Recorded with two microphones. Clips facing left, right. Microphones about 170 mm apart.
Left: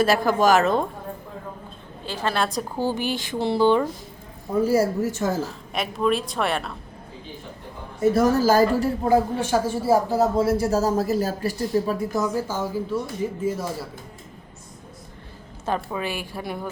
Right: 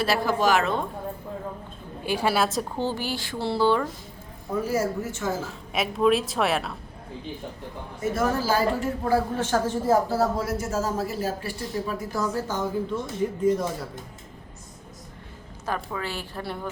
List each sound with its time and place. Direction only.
0.0 s speech: 45° left (ahead or behind)
2.0 s a woman's voice: 10° right (ahead or behind)
2.8 s speech: 20° left (ahead or behind)
4.7 s speech: 35° left (ahead or behind)
5.4 s a woman's voice: centre (ahead or behind)
8.1 s speech: 40° left (ahead or behind)
9.0 s speech: 15° left (ahead or behind)
10.3 s speech: 30° left (ahead or behind)
12.1 s a woman's voice: 15° left (ahead or behind)
15.6 s speech: 20° left (ahead or behind)